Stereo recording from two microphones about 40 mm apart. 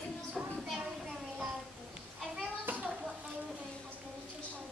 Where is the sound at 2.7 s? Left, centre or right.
Right.